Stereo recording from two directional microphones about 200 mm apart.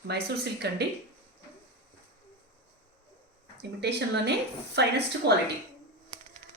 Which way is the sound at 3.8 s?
55° right (ahead or behind).